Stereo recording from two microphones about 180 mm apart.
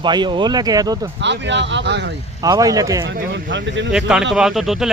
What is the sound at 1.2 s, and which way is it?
Speech, 80° right.